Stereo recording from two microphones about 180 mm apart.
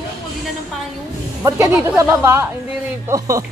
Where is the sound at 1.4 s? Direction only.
15° right (ahead or behind).